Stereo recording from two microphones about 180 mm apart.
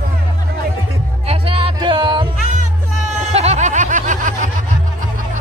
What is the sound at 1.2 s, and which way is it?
Music, 30° right (ahead or behind).